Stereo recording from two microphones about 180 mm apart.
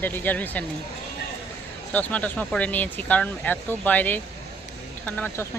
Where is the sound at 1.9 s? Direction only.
10° left (ahead or behind).